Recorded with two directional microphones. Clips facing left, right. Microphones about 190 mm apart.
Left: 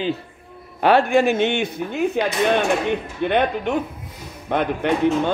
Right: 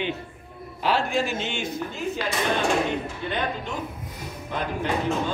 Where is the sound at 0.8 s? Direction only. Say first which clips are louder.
Left 8 dB; 60° left (ahead or behind).